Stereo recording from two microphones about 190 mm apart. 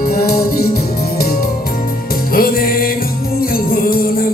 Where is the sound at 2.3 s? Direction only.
50° left (ahead or behind).